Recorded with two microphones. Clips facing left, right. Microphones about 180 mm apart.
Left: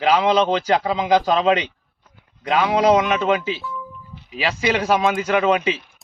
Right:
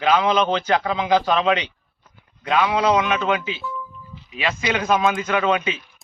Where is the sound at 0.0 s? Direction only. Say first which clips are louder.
Left 2 dB; 35° left (ahead or behind).